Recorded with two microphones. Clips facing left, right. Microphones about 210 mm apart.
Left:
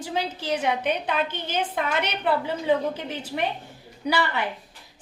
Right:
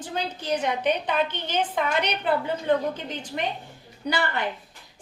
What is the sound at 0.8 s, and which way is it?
Speech, 55° left (ahead or behind).